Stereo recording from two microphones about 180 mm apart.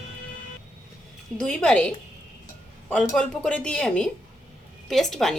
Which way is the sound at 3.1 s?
5° left (ahead or behind).